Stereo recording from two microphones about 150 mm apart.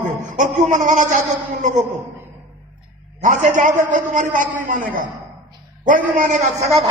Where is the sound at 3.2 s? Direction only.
60° right (ahead or behind).